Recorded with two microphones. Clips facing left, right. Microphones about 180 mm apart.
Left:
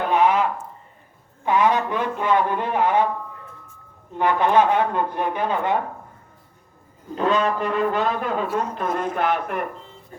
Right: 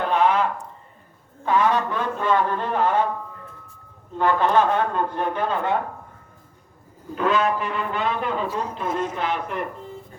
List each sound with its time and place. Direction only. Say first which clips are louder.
0.1 s a sound: left 2 dB; 10° left (ahead or behind)
1.5 s speech: left 1 dB; 15° left (ahead or behind)
4.2 s speech: left 1 dB; 15° left (ahead or behind)
7.2 s speech: left 1 dB; 35° left (ahead or behind); by 9.6 s 55° left (ahead or behind)